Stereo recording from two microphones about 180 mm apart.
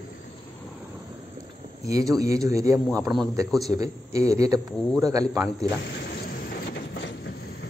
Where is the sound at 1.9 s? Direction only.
20° right (ahead or behind).